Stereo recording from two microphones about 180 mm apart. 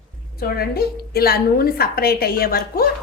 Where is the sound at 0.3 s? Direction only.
55° left (ahead or behind).